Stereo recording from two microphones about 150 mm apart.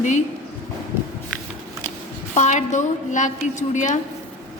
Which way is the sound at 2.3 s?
50° left (ahead or behind).